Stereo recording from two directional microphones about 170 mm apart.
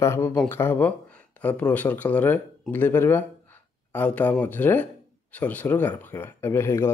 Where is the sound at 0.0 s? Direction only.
15° left (ahead or behind).